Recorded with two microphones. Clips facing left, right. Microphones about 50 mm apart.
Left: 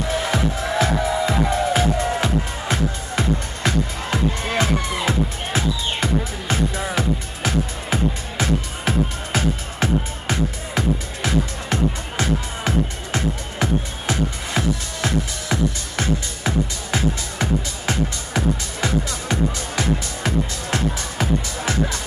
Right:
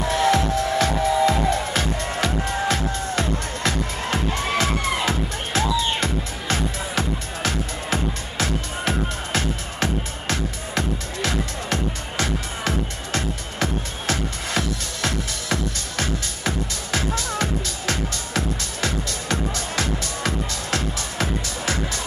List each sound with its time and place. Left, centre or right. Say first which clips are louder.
0.1 s music: right 4 dB; centre